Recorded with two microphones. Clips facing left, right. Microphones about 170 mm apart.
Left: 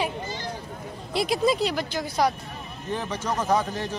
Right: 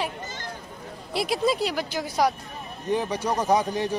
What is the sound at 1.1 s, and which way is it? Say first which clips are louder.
Speech: left 1 dB; 5° right (ahead or behind).